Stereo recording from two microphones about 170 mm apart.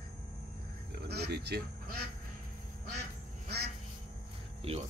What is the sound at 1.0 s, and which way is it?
Frog, 70° right (ahead or behind).